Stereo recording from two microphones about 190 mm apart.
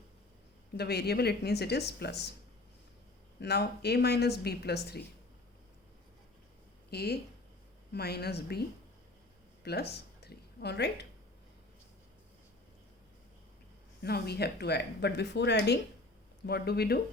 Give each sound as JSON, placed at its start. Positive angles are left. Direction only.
{"t": 0.8, "sound": "speech", "side_deg": 60}
{"t": 3.4, "sound": "speech", "side_deg": 60}
{"t": 6.9, "sound": "speech", "side_deg": 55}
{"t": 9.6, "sound": "speech", "side_deg": 60}
{"t": 14.0, "sound": "speech", "side_deg": 55}